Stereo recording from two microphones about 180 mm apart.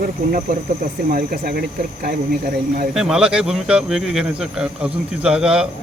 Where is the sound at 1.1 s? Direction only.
55° right (ahead or behind).